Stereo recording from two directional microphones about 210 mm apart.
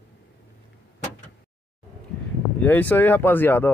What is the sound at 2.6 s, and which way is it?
Speech, 10° left (ahead or behind).